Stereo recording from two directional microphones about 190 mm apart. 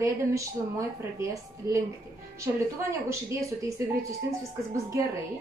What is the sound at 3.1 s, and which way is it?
A woman's voice, 15° right (ahead or behind).